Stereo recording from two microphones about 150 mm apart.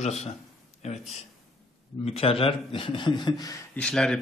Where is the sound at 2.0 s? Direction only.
40° left (ahead or behind); by 3.6 s 25° left (ahead or behind).